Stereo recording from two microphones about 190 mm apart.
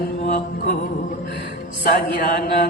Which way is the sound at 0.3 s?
45° left (ahead or behind).